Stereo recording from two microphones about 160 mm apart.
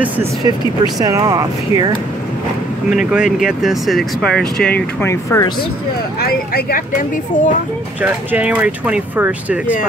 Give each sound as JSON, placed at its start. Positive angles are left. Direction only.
{"t": 0.5, "sound": "speech", "side_deg": -25}
{"t": 3.1, "sound": "speech", "side_deg": -5}
{"t": 6.1, "sound": "speech", "side_deg": 70}
{"t": 8.0, "sound": "speech", "side_deg": -10}